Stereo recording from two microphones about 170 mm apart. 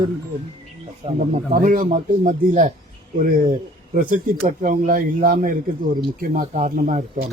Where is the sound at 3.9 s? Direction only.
55° right (ahead or behind).